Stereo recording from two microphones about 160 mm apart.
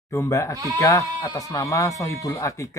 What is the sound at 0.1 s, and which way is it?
Speech, 20° left (ahead or behind).